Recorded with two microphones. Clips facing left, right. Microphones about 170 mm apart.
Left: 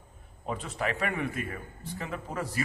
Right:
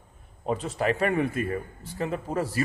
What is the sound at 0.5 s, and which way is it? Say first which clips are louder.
Speech: right 6 dB; 35° right (ahead or behind).